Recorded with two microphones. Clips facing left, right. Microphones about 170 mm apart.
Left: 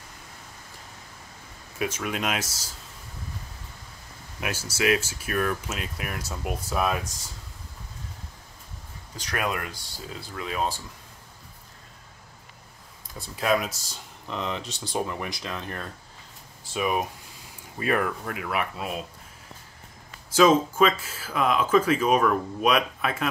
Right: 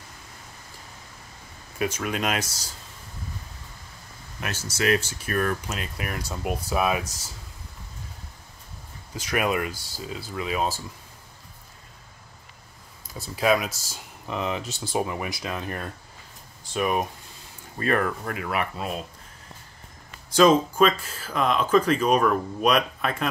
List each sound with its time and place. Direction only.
1.8 s speech: centre (ahead or behind)
4.4 s speech: 10° left (ahead or behind)
9.1 s speech: 5° right (ahead or behind)
13.4 s speech: centre (ahead or behind)
16.6 s speech: centre (ahead or behind)
20.2 s speech: 5° left (ahead or behind)